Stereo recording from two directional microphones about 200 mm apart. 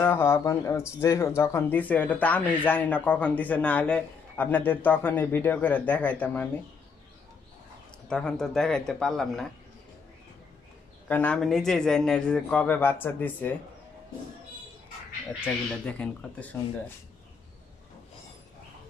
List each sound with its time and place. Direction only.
0.0 s speech: 10° left (ahead or behind)
8.1 s a man's voice: 5° left (ahead or behind)
11.1 s a man's voice: 5° left (ahead or behind)
15.4 s speech: 5° left (ahead or behind)